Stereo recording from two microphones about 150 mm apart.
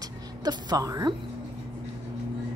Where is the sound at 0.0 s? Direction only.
30° right (ahead or behind).